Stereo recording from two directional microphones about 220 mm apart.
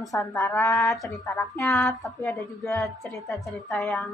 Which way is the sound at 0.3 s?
15° left (ahead or behind).